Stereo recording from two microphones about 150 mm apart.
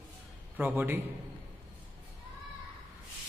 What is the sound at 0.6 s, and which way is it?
Speech, 15° right (ahead or behind).